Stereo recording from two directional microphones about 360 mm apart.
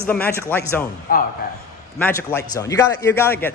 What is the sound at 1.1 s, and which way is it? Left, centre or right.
Speech, left.